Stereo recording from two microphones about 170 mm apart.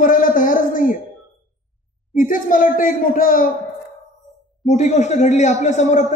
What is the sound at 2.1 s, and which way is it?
A man's voice, 55° left (ahead or behind).